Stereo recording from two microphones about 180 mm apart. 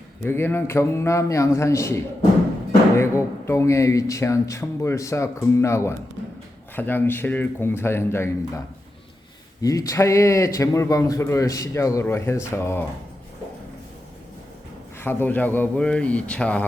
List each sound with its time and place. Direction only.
0.3 s a man's voice: 10° left (ahead or behind)
3.0 s a man's voice: 15° left (ahead or behind)
14.9 s a man's voice: 10° left (ahead or behind)